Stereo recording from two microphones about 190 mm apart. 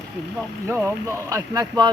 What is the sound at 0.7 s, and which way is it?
Speech, 10° right (ahead or behind).